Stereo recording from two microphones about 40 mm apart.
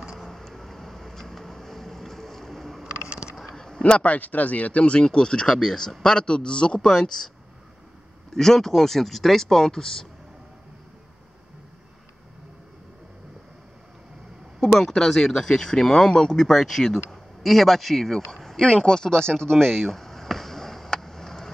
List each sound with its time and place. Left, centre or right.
0.2 s vehicle: centre
3.5 s a sound: centre
3.8 s speech: left
5.0 s a man's voice: left
8.3 s speech: centre
14.6 s speech: centre
16.4 s a man's voice: centre